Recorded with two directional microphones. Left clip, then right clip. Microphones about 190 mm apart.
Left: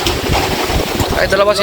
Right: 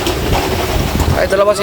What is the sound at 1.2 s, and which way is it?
Speech, 10° right (ahead or behind).